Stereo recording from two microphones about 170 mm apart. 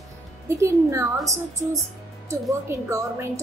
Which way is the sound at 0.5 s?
15° right (ahead or behind).